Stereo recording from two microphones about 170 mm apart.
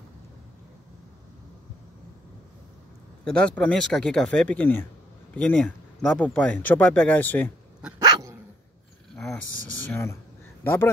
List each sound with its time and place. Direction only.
3.3 s speech: 5° left (ahead or behind)
8.0 s dog: 20° right (ahead or behind)
9.8 s speech: 15° left (ahead or behind)